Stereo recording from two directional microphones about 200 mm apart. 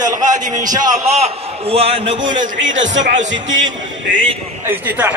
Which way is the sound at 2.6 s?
70° right (ahead or behind).